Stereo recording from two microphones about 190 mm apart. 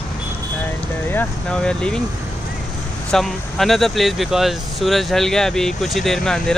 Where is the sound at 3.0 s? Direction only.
Centre (ahead or behind).